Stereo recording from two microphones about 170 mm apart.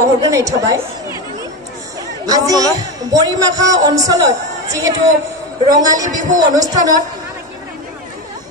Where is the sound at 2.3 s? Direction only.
20° right (ahead or behind).